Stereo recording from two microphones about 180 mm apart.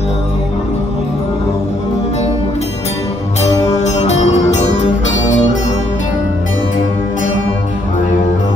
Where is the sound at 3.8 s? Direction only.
40° left (ahead or behind).